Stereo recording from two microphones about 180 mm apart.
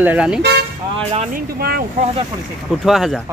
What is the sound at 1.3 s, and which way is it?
Speech, 55° right (ahead or behind).